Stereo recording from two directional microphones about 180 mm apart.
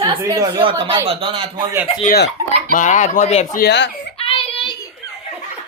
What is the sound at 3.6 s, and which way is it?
Speech, 70° left (ahead or behind).